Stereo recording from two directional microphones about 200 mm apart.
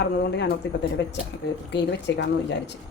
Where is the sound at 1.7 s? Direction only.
60° left (ahead or behind).